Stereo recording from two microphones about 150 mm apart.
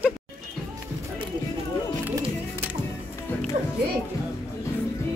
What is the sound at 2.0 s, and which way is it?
Music, 15° right (ahead or behind).